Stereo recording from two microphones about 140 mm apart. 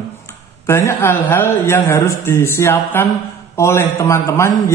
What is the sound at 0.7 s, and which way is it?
A man's voice, 20° left (ahead or behind).